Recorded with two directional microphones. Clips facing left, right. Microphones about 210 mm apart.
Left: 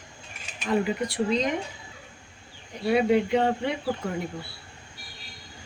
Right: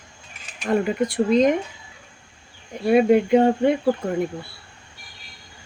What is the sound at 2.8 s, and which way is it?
Speech, 55° right (ahead or behind).